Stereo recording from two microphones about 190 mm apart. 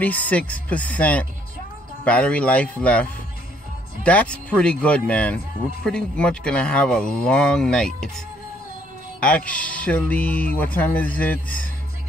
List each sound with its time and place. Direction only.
0.0 s speech: 10° left (ahead or behind)
9.2 s speech: 5° left (ahead or behind)